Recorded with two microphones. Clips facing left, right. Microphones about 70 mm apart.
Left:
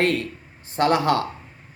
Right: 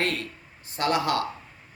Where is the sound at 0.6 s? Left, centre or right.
Left.